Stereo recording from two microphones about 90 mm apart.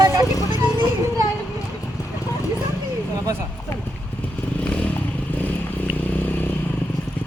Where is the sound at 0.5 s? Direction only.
55° right (ahead or behind).